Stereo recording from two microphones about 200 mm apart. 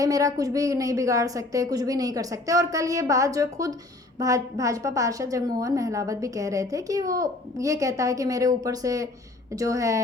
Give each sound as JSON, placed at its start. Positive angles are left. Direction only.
{"t": 0.0, "sound": "a woman's voice", "side_deg": -15}